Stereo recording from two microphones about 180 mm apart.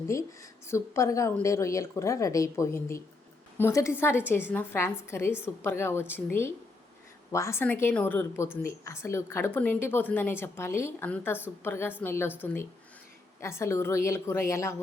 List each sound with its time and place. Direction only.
0.7 s a woman's voice: 15° left (ahead or behind)
13.4 s a woman's voice: 15° left (ahead or behind)